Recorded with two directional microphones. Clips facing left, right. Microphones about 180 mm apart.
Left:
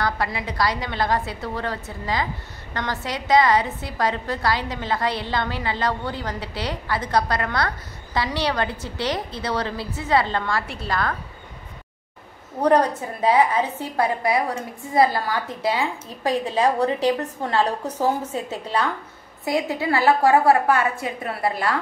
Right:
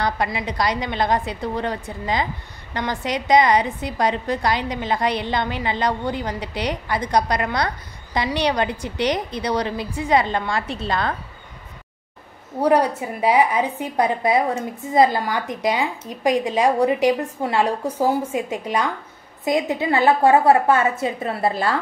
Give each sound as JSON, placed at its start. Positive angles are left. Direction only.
{"t": 0.0, "sound": "a woman's voice", "side_deg": -15}
{"t": 12.6, "sound": "a woman's voice", "side_deg": -10}